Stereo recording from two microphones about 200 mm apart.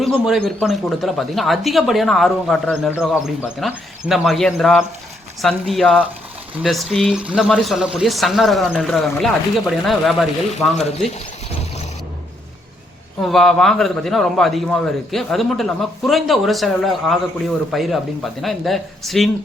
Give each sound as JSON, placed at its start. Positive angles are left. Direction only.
{"t": 0.0, "sound": "a man's voice", "side_deg": 0}
{"t": 10.8, "sound": "speech", "side_deg": 30}
{"t": 13.2, "sound": "a man's voice", "side_deg": 0}